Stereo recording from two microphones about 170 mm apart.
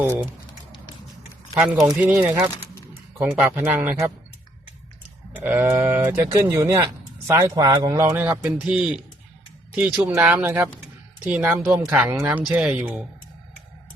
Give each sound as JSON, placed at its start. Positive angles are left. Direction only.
{"t": 0.0, "sound": "speech", "side_deg": -15}
{"t": 1.5, "sound": "speech", "side_deg": -10}
{"t": 1.8, "sound": "speech", "side_deg": -20}
{"t": 5.3, "sound": "speech", "side_deg": -10}